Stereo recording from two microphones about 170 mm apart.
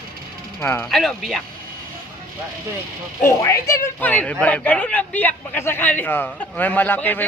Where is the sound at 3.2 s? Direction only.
15° left (ahead or behind).